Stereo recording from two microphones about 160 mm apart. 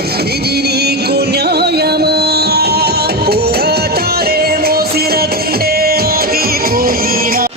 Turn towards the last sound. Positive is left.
turn(degrees=-65)  # may be behind; listen again after turning